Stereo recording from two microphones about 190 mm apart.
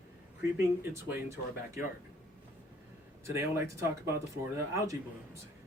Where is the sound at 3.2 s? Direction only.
15° right (ahead or behind).